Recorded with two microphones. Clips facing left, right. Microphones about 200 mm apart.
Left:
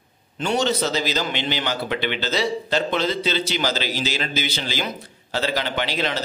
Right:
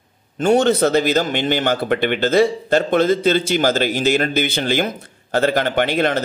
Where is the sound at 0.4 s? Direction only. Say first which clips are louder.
Right 8 dB; 50° right (ahead or behind).